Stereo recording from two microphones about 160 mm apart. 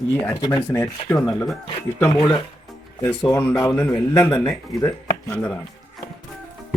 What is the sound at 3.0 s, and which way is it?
Speech, 10° left (ahead or behind).